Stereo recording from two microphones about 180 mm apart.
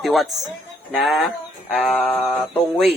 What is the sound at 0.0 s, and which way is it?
Speech, centre (ahead or behind).